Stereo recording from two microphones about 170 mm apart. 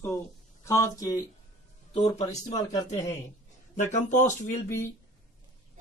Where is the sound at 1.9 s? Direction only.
40° left (ahead or behind).